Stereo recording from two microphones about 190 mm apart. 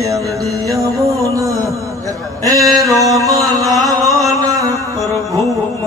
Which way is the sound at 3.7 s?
15° right (ahead or behind).